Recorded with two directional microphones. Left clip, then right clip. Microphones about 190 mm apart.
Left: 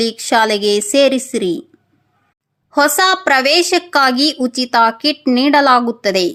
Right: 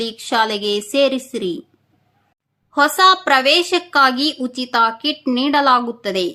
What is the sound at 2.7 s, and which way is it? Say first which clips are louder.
A woman's voice: even; 30° left (ahead or behind).